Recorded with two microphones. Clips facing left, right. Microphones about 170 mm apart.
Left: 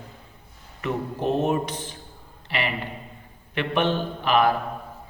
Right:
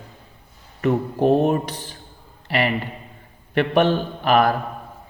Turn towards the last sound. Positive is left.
turn(degrees=-45)  # may be behind; listen again after turning